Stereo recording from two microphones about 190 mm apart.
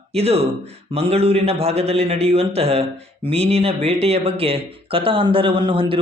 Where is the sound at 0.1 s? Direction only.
35° right (ahead or behind).